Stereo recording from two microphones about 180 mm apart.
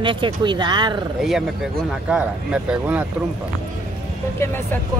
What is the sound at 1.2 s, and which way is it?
Speech, centre (ahead or behind).